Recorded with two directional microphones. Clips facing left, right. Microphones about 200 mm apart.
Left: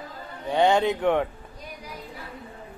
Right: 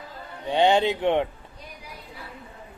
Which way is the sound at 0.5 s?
20° right (ahead or behind).